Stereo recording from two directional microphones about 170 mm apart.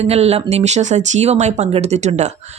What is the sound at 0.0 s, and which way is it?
Speech, 40° right (ahead or behind).